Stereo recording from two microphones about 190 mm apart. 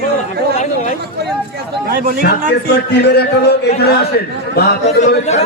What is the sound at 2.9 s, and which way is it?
A man's voice, 60° left (ahead or behind).